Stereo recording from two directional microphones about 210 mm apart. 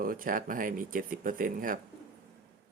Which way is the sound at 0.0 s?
40° right (ahead or behind).